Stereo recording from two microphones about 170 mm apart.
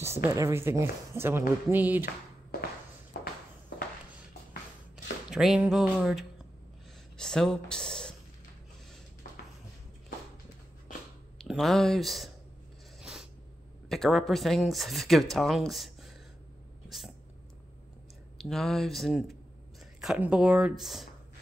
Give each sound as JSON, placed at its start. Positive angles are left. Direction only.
{"t": 0.0, "sound": "speech", "side_deg": -15}
{"t": 3.1, "sound": "walk", "side_deg": 65}
{"t": 5.3, "sound": "speech", "side_deg": -5}
{"t": 11.3, "sound": "speech", "side_deg": 0}
{"t": 13.0, "sound": "a sound", "side_deg": -5}
{"t": 13.8, "sound": "speech", "side_deg": 0}
{"t": 18.4, "sound": "speech", "side_deg": 0}